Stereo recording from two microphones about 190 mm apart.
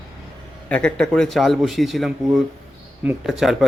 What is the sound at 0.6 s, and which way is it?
A man's voice, 5° left (ahead or behind).